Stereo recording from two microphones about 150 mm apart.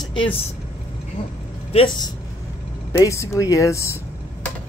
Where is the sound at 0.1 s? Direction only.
35° left (ahead or behind).